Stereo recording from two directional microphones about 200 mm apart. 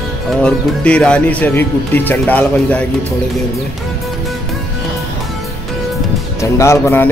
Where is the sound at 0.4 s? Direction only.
5° left (ahead or behind).